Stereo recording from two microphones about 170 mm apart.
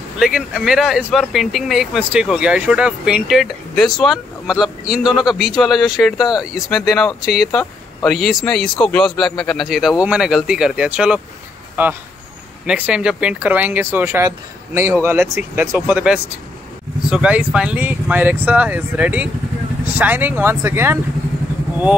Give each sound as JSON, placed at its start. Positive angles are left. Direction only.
{"t": 0.2, "sound": "speech", "side_deg": -5}
{"t": 6.1, "sound": "speech", "side_deg": 25}
{"t": 6.5, "sound": "speech", "side_deg": 0}